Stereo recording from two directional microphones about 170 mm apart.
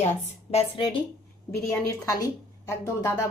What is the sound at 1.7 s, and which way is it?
A woman's voice, 20° left (ahead or behind).